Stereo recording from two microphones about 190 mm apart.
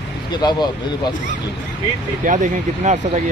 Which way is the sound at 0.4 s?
20° left (ahead or behind).